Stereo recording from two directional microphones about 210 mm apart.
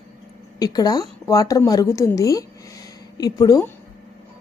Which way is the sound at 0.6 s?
15° left (ahead or behind).